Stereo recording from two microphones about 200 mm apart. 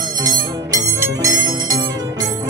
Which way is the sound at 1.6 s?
20° right (ahead or behind).